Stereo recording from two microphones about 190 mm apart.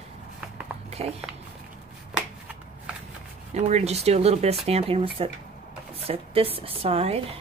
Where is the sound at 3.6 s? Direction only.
35° right (ahead or behind).